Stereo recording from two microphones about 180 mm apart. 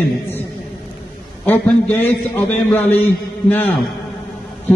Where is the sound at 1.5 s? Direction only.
10° left (ahead or behind).